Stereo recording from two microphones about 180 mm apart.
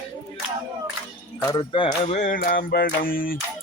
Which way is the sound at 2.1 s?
45° left (ahead or behind).